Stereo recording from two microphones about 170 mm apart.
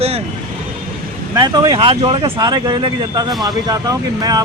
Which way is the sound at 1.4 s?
25° right (ahead or behind).